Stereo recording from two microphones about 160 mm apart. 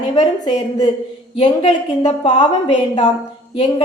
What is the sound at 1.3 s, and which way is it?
A woman's voice, 35° left (ahead or behind).